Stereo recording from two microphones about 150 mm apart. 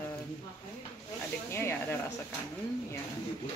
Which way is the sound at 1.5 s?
15° left (ahead or behind).